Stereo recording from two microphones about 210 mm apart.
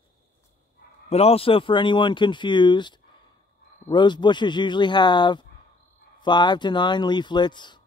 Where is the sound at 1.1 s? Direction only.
30° left (ahead or behind).